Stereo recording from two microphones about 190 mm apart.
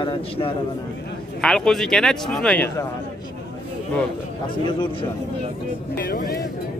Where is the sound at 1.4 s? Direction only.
5° left (ahead or behind).